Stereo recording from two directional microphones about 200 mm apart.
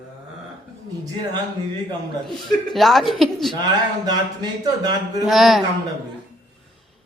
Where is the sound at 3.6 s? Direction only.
20° right (ahead or behind).